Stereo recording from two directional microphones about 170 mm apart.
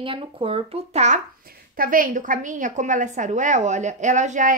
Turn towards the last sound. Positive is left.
turn(degrees=-45)  # may be behind; listen again after turning